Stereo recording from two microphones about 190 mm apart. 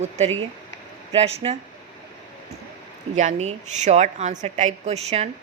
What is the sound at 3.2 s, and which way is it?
A woman's voice, 35° right (ahead or behind).